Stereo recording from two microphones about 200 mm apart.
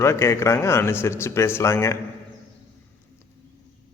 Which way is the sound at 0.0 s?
15° left (ahead or behind).